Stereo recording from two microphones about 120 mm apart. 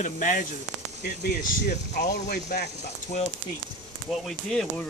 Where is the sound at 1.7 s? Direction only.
80° left.